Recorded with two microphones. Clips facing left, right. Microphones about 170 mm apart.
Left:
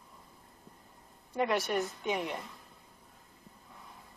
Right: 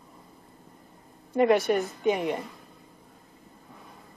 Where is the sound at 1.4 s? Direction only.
60° right (ahead or behind).